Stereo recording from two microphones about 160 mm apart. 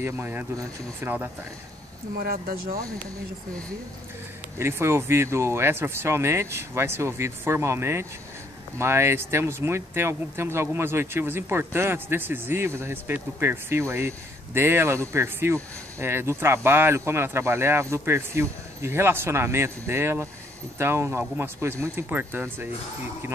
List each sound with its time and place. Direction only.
0.0 s speech: 10° right (ahead or behind)
2.2 s speech: 70° right (ahead or behind)
4.6 s speech: 15° right (ahead or behind)